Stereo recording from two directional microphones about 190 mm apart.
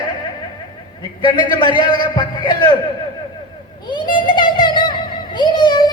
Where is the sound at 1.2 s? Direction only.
25° left (ahead or behind).